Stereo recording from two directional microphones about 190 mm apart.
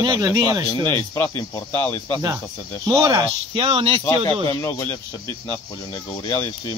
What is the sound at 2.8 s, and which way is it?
Speech, 20° right (ahead or behind).